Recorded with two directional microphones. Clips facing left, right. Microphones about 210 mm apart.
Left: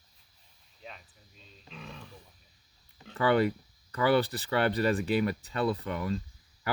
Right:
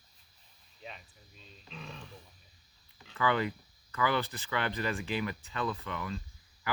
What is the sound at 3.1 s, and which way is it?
Speech, 40° left (ahead or behind).